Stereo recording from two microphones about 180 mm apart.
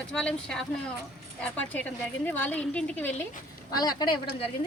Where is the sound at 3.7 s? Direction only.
20° left (ahead or behind).